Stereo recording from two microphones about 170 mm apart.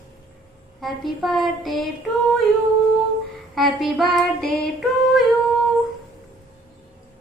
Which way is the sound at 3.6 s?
Centre (ahead or behind).